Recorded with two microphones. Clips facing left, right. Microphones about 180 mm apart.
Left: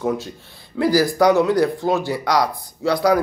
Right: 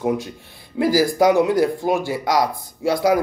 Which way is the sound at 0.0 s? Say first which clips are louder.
Right 1 dB; 20° right (ahead or behind).